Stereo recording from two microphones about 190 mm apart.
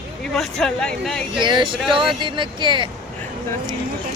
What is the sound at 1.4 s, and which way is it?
Speech, 25° right (ahead or behind).